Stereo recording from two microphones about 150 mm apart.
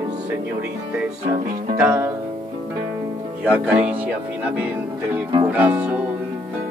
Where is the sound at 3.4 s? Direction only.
10° right (ahead or behind).